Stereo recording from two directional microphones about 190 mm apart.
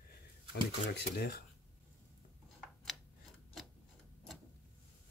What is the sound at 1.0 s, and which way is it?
Speech, 55° left (ahead or behind).